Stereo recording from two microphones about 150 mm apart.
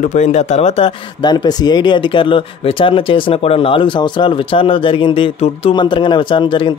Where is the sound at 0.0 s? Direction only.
55° left (ahead or behind).